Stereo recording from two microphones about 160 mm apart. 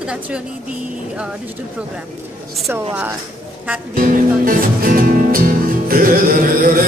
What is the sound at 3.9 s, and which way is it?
Music, 60° right (ahead or behind).